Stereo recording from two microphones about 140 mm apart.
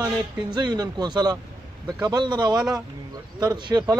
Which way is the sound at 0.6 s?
30° right (ahead or behind).